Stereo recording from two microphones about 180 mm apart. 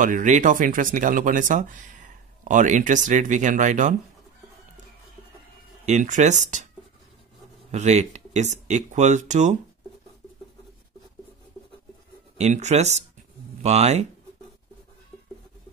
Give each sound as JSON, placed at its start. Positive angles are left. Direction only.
{"t": 0.0, "sound": "speech", "side_deg": -45}
{"t": 5.9, "sound": "speech", "side_deg": -45}
{"t": 7.7, "sound": "speech", "side_deg": -40}
{"t": 12.4, "sound": "speech", "side_deg": -40}